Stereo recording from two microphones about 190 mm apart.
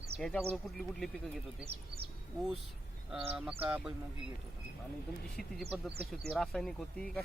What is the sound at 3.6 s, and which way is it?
Speech, 5° right (ahead or behind).